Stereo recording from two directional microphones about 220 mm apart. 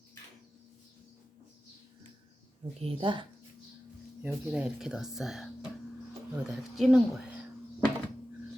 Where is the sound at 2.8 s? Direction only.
25° right (ahead or behind).